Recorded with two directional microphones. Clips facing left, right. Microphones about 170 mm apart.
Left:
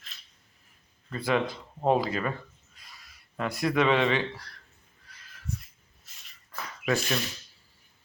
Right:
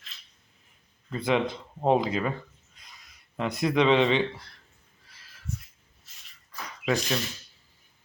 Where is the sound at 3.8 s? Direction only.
Centre (ahead or behind).